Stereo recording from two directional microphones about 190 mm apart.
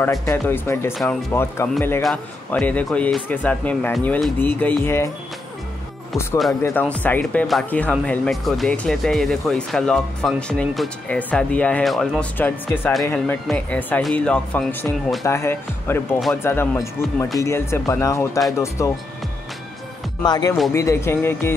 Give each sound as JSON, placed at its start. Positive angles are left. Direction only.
{"t": 0.0, "sound": "speech", "side_deg": 15}
{"t": 6.6, "sound": "speech", "side_deg": 10}
{"t": 20.2, "sound": "speech", "side_deg": 20}